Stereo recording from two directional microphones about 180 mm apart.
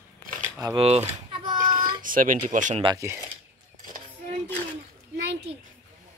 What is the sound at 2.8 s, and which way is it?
Speech, 15° right (ahead or behind).